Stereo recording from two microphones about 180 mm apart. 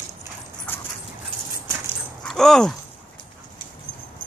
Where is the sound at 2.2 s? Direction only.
5° left (ahead or behind).